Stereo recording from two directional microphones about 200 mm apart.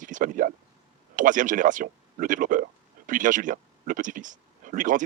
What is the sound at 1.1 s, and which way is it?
Speech, 40° right (ahead or behind).